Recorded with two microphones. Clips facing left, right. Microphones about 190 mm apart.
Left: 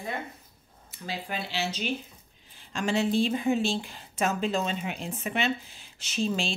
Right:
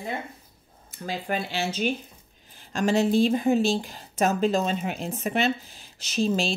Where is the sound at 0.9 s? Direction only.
50° right (ahead or behind).